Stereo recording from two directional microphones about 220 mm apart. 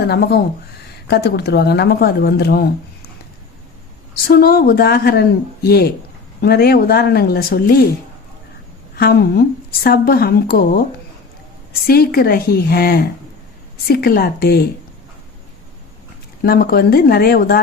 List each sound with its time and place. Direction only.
0.0 s a woman's voice: 45° left (ahead or behind)
4.3 s a woman's voice: 45° left (ahead or behind)
9.0 s a woman's voice: 45° left (ahead or behind)
11.9 s a woman's voice: 45° left (ahead or behind)
16.5 s a woman's voice: 45° left (ahead or behind)